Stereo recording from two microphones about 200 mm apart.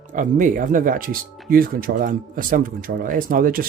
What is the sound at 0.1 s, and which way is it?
Speech, 40° right (ahead or behind).